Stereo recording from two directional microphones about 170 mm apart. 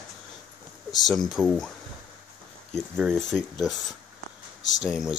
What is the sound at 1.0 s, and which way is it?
Speech, centre (ahead or behind).